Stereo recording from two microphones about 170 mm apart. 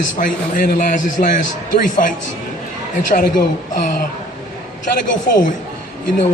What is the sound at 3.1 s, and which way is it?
Speech, 45° left (ahead or behind).